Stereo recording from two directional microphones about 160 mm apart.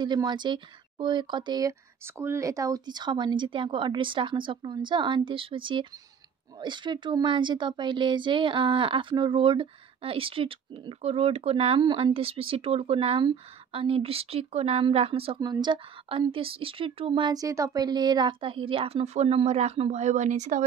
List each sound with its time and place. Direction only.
0.0 s speech: 25° right (ahead or behind)
15.4 s speech: 25° right (ahead or behind); by 20.6 s 50° right (ahead or behind)